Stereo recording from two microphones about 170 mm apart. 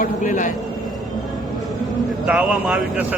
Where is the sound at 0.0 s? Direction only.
50° left (ahead or behind).